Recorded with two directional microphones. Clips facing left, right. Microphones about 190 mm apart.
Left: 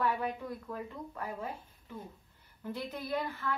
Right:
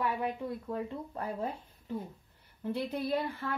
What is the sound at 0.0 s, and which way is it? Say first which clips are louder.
Speech: even; 20° right (ahead or behind).